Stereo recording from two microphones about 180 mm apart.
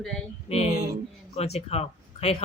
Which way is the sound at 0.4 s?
35° left (ahead or behind).